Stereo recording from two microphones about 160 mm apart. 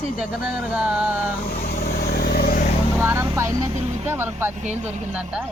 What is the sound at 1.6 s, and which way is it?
Vehicle, 70° left (ahead or behind).